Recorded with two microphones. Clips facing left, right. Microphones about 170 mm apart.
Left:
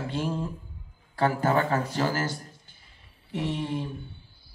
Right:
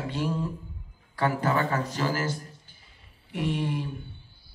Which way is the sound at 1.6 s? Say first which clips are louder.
Left 2 dB; 45° left (ahead or behind).